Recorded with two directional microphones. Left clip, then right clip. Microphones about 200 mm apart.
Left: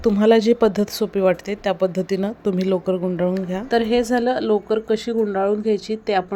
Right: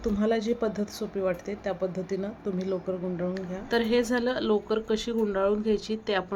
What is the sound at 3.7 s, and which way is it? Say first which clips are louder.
Speech: left 6 dB; 25° left (ahead or behind).